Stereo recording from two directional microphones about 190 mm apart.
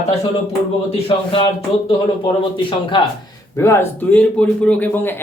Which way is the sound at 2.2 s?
25° left (ahead or behind).